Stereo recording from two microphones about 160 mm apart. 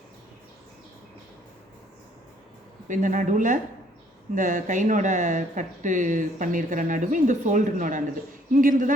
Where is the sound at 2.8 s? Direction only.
50° right (ahead or behind).